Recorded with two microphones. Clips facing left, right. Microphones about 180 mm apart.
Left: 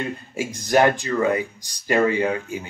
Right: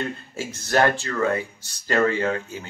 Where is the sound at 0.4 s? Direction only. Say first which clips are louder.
Left 3 dB; 15° left (ahead or behind).